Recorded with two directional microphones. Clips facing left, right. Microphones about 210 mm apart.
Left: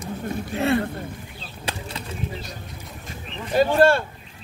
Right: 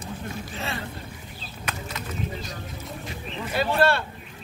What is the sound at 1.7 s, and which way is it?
Bird, 30° left (ahead or behind).